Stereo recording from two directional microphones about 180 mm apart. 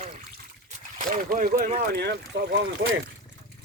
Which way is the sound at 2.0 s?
70° right (ahead or behind).